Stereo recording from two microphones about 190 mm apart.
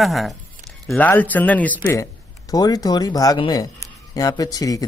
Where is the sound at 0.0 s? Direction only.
Centre (ahead or behind).